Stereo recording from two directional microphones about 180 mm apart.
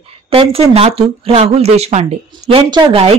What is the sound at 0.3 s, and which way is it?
A woman's voice, 30° right (ahead or behind).